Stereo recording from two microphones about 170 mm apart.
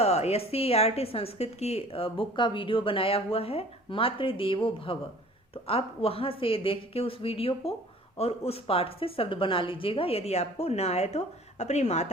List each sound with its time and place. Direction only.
0.0 s a woman's voice: 40° left (ahead or behind)